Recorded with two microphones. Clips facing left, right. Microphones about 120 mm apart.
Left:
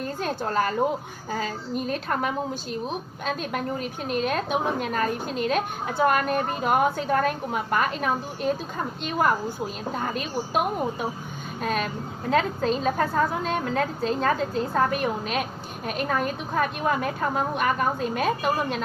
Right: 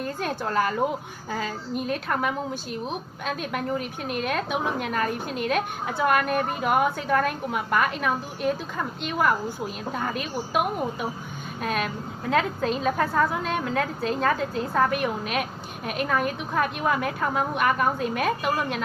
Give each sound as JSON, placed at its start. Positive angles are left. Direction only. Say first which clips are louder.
{"t": 0.0, "sound": "a sound", "louder": "even", "side_deg": 35}
{"t": 1.3, "sound": "a woman's voice", "louder": "left 1 dB", "side_deg": 35}
{"t": 10.0, "sound": "a woman's voice", "louder": "left 1 dB", "side_deg": 35}
{"t": 11.6, "sound": "a woman's voice", "louder": "left 1 dB", "side_deg": 35}